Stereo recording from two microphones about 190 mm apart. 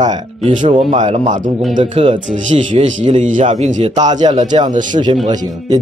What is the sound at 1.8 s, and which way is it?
Speech, 30° right (ahead or behind).